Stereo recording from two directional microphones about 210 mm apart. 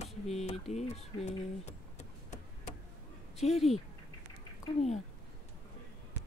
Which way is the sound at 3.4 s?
30° left (ahead or behind).